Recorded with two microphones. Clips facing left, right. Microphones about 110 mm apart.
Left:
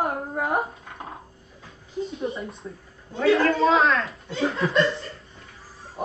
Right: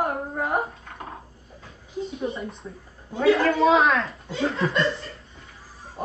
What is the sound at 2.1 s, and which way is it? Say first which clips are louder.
Speech: even; centre (ahead or behind).